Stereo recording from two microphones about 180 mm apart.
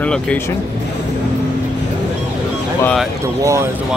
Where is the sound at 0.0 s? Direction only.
5° left (ahead or behind).